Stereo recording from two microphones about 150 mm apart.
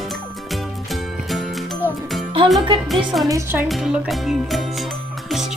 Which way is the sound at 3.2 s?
20° right (ahead or behind).